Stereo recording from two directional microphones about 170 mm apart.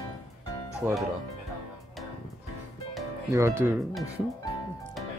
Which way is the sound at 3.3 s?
15° right (ahead or behind).